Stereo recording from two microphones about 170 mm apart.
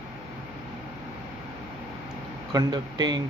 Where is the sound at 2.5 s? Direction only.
25° right (ahead or behind).